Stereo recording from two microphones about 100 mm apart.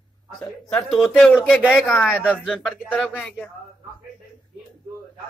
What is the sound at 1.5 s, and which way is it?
Speech, 15° left (ahead or behind).